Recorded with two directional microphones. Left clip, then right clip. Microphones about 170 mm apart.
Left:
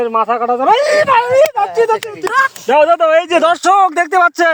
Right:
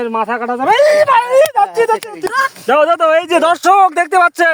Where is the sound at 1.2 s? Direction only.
45° right (ahead or behind).